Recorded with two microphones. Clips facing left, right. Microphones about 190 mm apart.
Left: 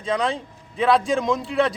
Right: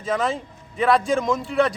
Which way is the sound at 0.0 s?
Centre (ahead or behind).